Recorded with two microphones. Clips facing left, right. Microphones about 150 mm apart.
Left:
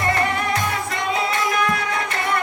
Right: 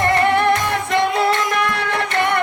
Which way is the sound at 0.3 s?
70° right (ahead or behind).